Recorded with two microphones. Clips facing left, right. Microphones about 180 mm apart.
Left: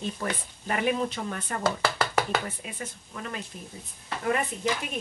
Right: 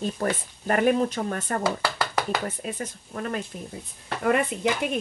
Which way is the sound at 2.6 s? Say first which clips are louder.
Right 6 dB; 45° right (ahead or behind).